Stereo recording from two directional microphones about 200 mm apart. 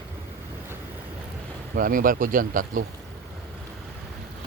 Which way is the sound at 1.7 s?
45° right (ahead or behind).